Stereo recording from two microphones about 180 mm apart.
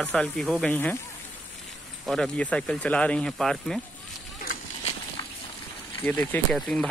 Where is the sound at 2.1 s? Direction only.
5° left (ahead or behind).